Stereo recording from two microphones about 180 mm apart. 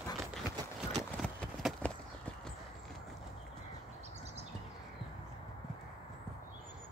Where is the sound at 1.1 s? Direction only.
Centre (ahead or behind).